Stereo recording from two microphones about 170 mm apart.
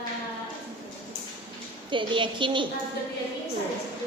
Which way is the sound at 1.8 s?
30° right (ahead or behind).